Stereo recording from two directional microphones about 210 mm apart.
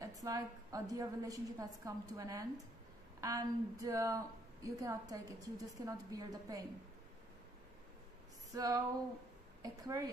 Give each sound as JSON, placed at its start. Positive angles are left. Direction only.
{"t": 0.0, "sound": "a woman's voice", "side_deg": -15}
{"t": 8.5, "sound": "a woman's voice", "side_deg": -15}